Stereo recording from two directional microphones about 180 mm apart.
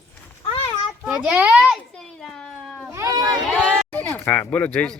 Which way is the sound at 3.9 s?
10° left (ahead or behind).